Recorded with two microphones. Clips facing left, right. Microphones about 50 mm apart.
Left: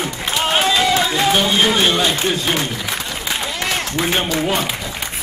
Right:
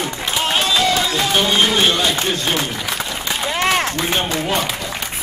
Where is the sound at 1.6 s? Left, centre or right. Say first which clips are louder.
Left 1 dB; centre.